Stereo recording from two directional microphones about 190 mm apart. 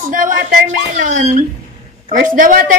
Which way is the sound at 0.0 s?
45° right (ahead or behind).